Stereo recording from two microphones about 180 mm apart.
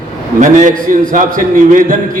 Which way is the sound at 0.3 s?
45° right (ahead or behind).